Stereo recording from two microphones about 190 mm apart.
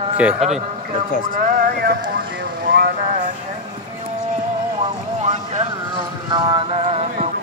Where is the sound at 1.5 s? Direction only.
50° right (ahead or behind).